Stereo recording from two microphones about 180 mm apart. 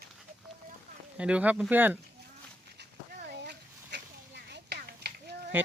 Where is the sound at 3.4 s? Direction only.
65° right (ahead or behind).